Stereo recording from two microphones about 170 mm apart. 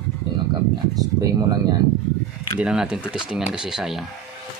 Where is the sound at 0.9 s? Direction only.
20° right (ahead or behind).